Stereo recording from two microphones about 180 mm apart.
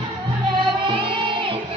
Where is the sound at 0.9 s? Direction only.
30° right (ahead or behind).